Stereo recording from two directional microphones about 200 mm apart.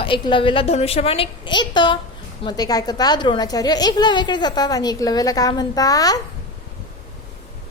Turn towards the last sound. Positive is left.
turn(degrees=20)  # may be behind; listen again after turning